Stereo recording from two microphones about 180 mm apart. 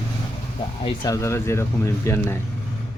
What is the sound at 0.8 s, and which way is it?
Speech, 25° left (ahead or behind).